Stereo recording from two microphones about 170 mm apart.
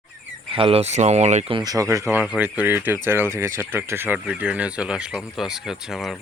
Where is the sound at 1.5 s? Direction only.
20° right (ahead or behind).